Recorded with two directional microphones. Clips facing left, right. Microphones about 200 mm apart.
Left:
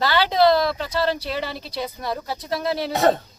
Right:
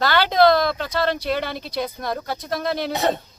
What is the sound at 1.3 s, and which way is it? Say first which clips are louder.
Speech: right 3 dB; 5° left (ahead or behind).